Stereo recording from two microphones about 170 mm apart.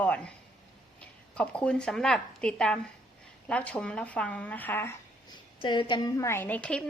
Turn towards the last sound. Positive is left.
turn(degrees=10)  # may be behind; listen again after turning